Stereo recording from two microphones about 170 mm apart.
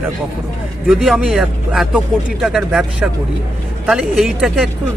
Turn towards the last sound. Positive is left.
turn(degrees=0)  # may be behind; listen again after turning